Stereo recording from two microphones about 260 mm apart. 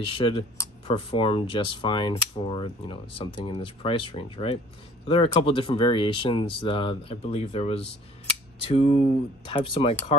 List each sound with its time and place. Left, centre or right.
0.0 s speech: left